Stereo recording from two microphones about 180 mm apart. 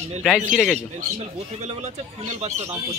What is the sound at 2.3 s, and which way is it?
Speech, 40° right (ahead or behind).